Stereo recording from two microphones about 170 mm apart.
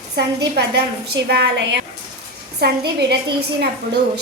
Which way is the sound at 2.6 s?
70° right (ahead or behind).